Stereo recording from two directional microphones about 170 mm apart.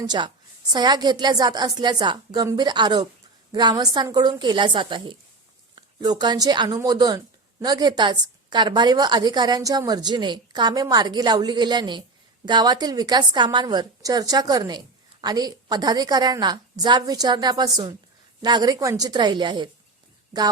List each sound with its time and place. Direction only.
0.0 s a woman's voice: 25° right (ahead or behind)